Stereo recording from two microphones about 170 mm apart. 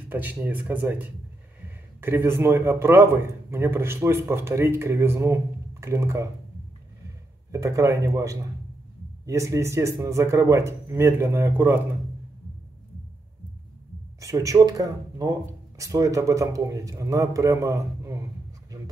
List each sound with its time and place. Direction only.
0.1 s a man's voice: 10° right (ahead or behind)
7.5 s a man's voice: 20° right (ahead or behind)
14.2 s a man's voice: 20° right (ahead or behind)